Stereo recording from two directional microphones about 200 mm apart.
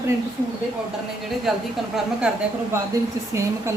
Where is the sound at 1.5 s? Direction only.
Centre (ahead or behind).